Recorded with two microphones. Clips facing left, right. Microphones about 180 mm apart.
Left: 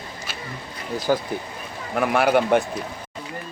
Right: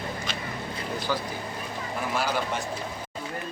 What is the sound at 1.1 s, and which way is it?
Speech, 50° left (ahead or behind).